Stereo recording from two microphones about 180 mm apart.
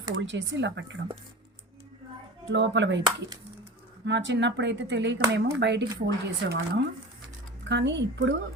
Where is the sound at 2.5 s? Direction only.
85° right.